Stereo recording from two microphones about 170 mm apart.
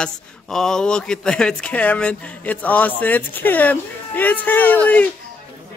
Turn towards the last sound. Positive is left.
turn(degrees=10)  # may be behind; listen again after turning